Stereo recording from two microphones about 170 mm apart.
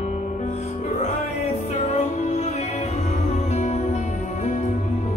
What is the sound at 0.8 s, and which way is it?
Music, 40° left (ahead or behind).